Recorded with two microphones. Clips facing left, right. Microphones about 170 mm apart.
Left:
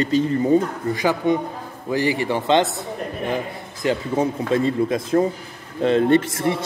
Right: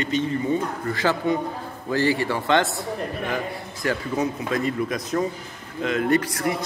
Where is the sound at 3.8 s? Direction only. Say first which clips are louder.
Left 4 dB; 25° left (ahead or behind).